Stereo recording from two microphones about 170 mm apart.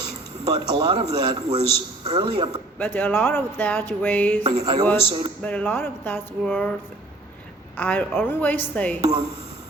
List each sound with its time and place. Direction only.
0.4 s a man's voice: 30° right (ahead or behind)
2.7 s speech: 10° left (ahead or behind)
4.6 s a man's voice: 25° right (ahead or behind)
5.4 s speech: 5° left (ahead or behind)
7.8 s speech: 10° left (ahead or behind)
9.0 s a man's voice: 30° right (ahead or behind)